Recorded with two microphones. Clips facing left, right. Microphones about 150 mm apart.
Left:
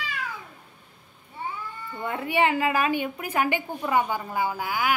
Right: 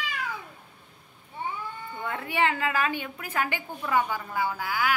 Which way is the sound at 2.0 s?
20° left (ahead or behind).